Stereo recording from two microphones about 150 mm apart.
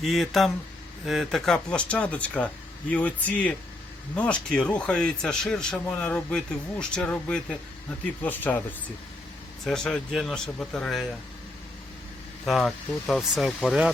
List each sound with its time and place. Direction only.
0.0 s a man's voice: centre (ahead or behind)
9.6 s a man's voice: 5° left (ahead or behind)
12.5 s a man's voice: centre (ahead or behind)